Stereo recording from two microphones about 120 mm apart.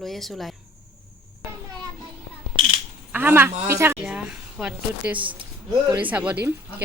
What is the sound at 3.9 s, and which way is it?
Speech, 10° right (ahead or behind).